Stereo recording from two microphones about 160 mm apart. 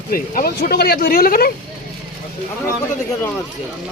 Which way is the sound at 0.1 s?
65° left (ahead or behind).